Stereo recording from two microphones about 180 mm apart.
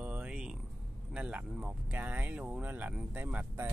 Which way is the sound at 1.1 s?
5° right (ahead or behind).